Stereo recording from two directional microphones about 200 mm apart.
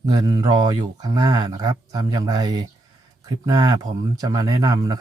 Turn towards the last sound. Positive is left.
turn(degrees=-20)  # may be behind; listen again after turning